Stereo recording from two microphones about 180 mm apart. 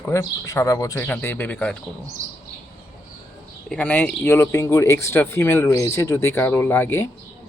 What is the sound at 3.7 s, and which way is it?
Speech, 5° left (ahead or behind).